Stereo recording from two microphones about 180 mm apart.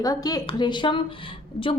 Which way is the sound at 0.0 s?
20° left (ahead or behind).